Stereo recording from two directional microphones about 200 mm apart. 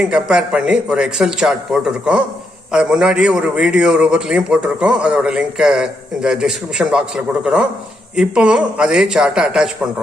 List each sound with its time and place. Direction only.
0.0 s a man's voice: 5° right (ahead or behind)